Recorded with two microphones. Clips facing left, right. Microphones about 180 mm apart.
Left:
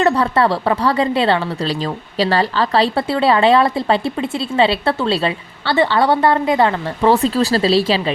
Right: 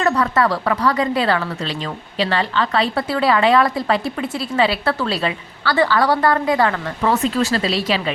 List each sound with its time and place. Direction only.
0.0 s speech: 30° left (ahead or behind)